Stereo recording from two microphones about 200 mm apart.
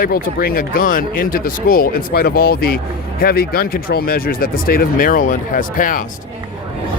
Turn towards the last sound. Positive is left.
turn(degrees=45)  # may be behind; listen again after turning